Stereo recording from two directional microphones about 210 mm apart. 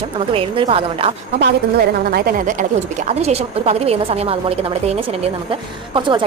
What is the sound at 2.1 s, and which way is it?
Speech, 45° right (ahead or behind).